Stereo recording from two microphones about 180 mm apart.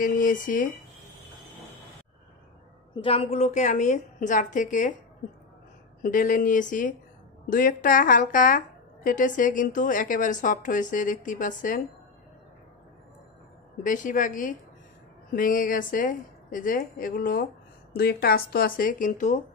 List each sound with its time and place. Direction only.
0.0 s a woman's voice: 45° left (ahead or behind)
3.0 s a woman's voice: 30° left (ahead or behind)
3.3 s a woman's voice: 40° left (ahead or behind)
6.0 s a woman's voice: 50° left (ahead or behind)
13.8 s a woman's voice: 45° left (ahead or behind)